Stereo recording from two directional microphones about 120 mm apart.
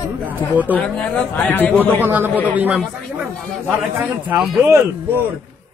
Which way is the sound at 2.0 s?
15° right (ahead or behind).